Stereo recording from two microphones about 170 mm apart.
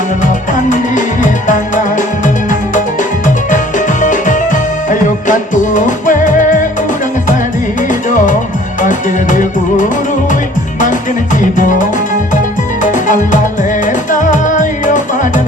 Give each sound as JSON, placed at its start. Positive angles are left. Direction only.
{"t": 0.7, "sound": "music", "side_deg": 50}
{"t": 8.8, "sound": "music", "side_deg": 50}
{"t": 12.8, "sound": "music", "side_deg": 50}